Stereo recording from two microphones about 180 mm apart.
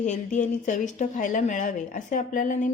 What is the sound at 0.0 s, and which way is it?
A woman's voice, 40° left (ahead or behind).